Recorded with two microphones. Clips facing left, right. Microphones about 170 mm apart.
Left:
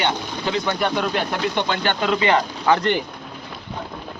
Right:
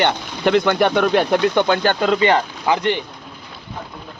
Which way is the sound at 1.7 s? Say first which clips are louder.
Right 4 dB; 40° right (ahead or behind).